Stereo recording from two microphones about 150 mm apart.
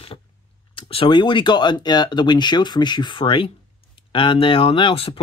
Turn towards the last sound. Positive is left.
turn(degrees=35)  # may be behind; listen again after turning